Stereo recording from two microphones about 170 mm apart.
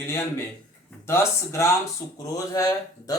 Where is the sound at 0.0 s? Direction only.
15° left (ahead or behind).